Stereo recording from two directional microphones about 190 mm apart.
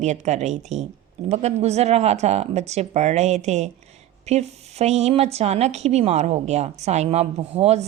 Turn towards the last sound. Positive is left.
turn(degrees=-35)  # may be behind; listen again after turning